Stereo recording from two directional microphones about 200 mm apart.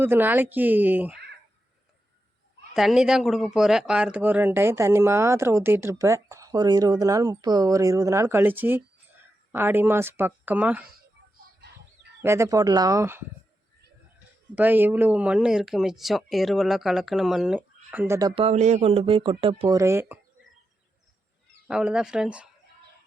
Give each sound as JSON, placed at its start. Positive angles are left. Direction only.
{"t": 0.0, "sound": "speech", "side_deg": -10}
{"t": 2.7, "sound": "speech", "side_deg": 0}
{"t": 12.2, "sound": "speech", "side_deg": -15}
{"t": 14.5, "sound": "speech", "side_deg": -10}
{"t": 21.7, "sound": "speech", "side_deg": -5}